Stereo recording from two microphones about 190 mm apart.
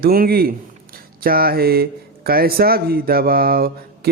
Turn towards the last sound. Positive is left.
turn(degrees=-50)  # may be behind; listen again after turning